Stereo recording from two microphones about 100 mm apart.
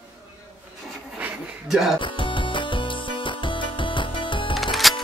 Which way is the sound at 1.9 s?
55° left (ahead or behind).